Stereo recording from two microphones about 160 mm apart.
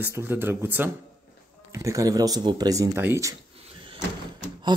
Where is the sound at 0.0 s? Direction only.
15° right (ahead or behind).